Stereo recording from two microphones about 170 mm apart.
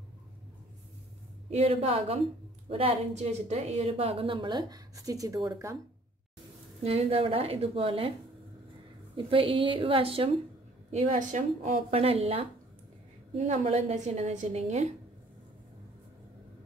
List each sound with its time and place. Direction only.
1.5 s a woman's voice: 35° right (ahead or behind); by 5.8 s 20° right (ahead or behind)
6.8 s speech: 35° right (ahead or behind)
9.1 s speech: 30° right (ahead or behind)
10.9 s a woman's voice: 45° right (ahead or behind)